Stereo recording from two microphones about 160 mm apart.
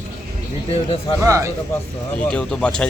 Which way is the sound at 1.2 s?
20° right (ahead or behind).